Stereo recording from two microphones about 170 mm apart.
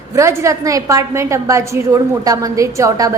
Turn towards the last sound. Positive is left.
turn(degrees=-20)  # may be behind; listen again after turning